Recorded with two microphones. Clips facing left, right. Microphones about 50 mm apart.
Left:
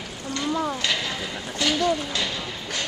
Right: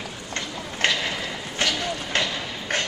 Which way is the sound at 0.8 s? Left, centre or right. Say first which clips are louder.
Right 8 dB; right.